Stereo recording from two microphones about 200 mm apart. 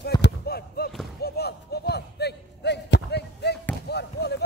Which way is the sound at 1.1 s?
55° left (ahead or behind).